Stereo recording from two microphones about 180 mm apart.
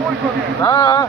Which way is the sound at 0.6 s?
20° left (ahead or behind).